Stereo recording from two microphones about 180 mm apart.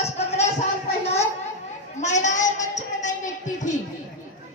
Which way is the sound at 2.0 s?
40° left (ahead or behind).